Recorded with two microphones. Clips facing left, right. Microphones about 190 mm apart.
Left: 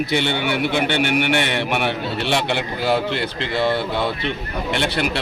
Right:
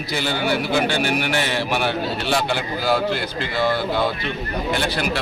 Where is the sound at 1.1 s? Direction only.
35° right (ahead or behind).